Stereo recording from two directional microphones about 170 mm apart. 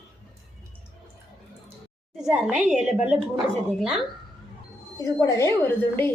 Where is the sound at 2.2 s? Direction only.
5° right (ahead or behind).